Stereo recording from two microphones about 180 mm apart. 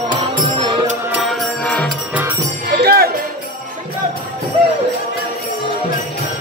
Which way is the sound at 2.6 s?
65° right (ahead or behind).